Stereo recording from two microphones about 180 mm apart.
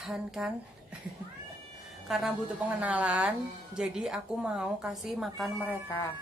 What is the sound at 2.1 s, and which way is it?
A woman's voice, 5° right (ahead or behind).